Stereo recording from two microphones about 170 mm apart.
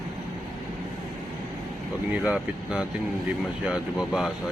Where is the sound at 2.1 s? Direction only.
5° right (ahead or behind).